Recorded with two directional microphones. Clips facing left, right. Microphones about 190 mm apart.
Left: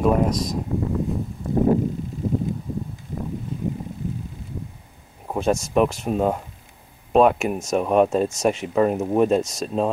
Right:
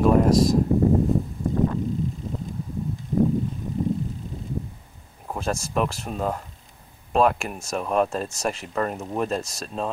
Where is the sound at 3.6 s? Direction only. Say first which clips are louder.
Left 3 dB; 90° left.